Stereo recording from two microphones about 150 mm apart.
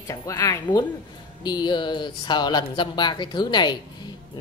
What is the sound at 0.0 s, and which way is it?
Speech, 20° left (ahead or behind).